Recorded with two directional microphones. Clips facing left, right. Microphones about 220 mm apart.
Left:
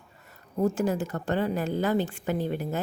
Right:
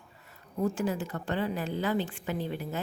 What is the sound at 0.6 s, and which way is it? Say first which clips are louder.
A woman's voice: left 4 dB; 45° left (ahead or behind).